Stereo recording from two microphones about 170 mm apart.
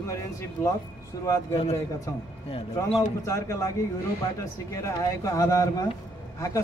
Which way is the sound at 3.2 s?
20° left (ahead or behind).